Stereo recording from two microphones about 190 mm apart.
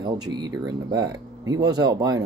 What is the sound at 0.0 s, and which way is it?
Speech, 20° right (ahead or behind).